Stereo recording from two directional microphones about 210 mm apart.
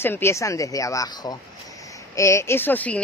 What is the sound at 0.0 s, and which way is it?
Speech, 10° left (ahead or behind).